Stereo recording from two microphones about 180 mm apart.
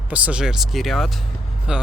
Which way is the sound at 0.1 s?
5° right (ahead or behind).